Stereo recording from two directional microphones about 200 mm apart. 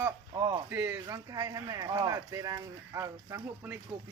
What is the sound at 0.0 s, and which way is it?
Speech, 20° right (ahead or behind).